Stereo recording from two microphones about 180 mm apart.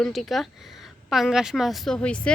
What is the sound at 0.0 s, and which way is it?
Speech, centre (ahead or behind).